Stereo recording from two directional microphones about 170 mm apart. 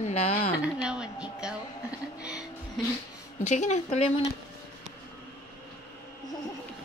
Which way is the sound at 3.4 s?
45° left (ahead or behind).